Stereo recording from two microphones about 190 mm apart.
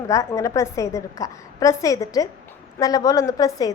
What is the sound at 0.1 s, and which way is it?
A woman's voice, 15° left (ahead or behind).